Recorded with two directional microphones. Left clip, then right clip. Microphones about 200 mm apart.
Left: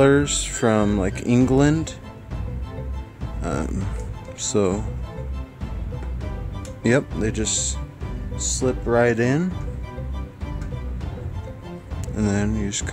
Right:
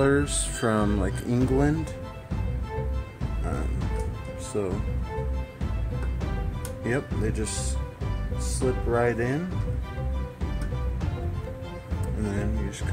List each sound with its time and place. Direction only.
0.0 s speech: 40° left (ahead or behind)
4.5 s speech: 60° left (ahead or behind)
6.8 s speech: 50° left (ahead or behind)
12.2 s speech: 50° left (ahead or behind)